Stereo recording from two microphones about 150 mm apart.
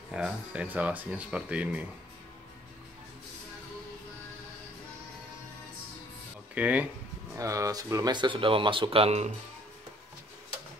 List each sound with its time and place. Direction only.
0.1 s speech: 5° right (ahead or behind)
6.5 s speech: 10° right (ahead or behind)
7.3 s speech: 20° right (ahead or behind); by 9.3 s 45° right (ahead or behind)